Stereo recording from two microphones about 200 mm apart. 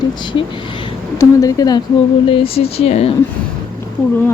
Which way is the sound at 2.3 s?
30° left (ahead or behind).